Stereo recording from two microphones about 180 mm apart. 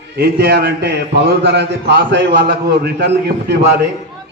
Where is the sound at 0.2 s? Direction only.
60° right (ahead or behind).